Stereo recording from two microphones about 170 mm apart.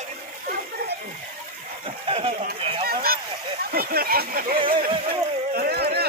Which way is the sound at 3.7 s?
60° right (ahead or behind).